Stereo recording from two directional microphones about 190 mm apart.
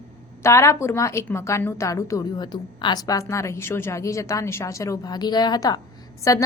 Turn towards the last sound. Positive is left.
turn(degrees=20)  # may be behind; listen again after turning